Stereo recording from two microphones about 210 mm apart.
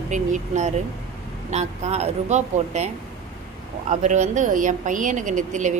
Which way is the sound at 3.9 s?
35° right (ahead or behind).